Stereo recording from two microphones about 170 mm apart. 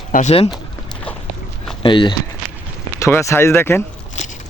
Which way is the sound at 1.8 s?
30° left (ahead or behind).